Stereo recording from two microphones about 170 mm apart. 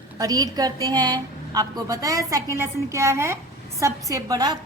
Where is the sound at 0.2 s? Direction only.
20° right (ahead or behind).